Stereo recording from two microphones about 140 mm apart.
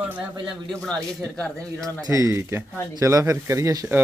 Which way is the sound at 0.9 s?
5° left (ahead or behind).